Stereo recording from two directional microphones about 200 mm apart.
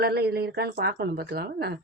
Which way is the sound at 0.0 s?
50° right (ahead or behind).